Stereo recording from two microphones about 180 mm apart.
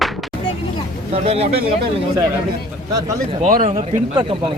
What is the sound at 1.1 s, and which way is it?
Speech, 35° right (ahead or behind).